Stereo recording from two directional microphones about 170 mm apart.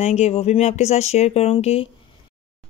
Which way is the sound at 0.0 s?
40° left (ahead or behind).